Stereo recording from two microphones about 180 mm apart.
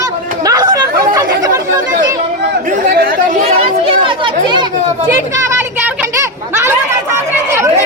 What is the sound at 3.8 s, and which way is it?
Chatter, 30° right (ahead or behind).